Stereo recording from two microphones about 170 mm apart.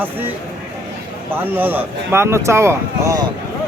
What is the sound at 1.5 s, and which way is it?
Speech, 10° right (ahead or behind).